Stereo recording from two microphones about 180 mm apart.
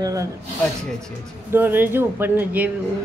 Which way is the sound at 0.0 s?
20° right (ahead or behind).